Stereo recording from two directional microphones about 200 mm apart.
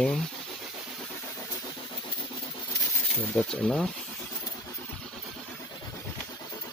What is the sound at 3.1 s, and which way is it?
Speech, 5° left (ahead or behind).